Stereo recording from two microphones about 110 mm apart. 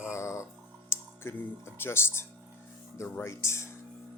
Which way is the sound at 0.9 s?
20° left (ahead or behind).